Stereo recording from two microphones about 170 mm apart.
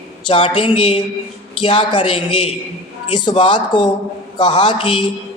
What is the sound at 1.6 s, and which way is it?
A man's voice, 30° left (ahead or behind).